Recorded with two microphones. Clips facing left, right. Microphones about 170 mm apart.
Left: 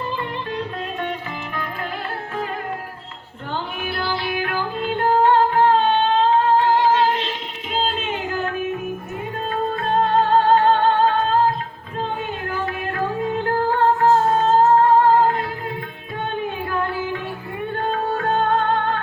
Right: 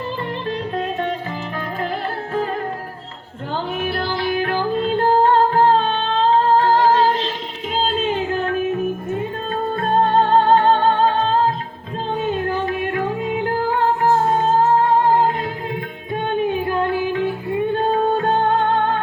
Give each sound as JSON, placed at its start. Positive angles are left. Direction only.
{"t": 3.8, "sound": "music", "side_deg": -40}
{"t": 10.2, "sound": "music", "side_deg": -30}
{"t": 12.6, "sound": "music", "side_deg": -20}
{"t": 16.4, "sound": "music", "side_deg": -20}